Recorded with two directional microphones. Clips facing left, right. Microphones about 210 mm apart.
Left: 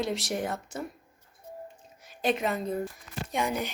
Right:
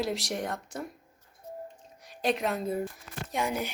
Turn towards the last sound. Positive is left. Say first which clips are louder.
# left 1 dB
turn(degrees=-5)  # may be behind; listen again after turning